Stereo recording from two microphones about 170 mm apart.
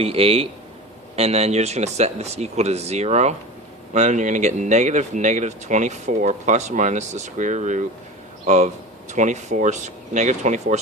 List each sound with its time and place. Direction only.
0.0 s speech: 35° right (ahead or behind)